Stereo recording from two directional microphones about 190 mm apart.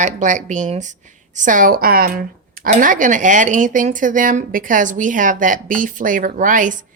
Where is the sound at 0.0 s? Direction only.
40° right (ahead or behind).